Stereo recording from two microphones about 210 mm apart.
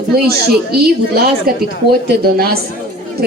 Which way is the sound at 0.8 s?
50° right (ahead or behind).